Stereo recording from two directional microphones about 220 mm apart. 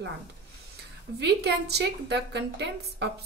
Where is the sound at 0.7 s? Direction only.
50° right (ahead or behind).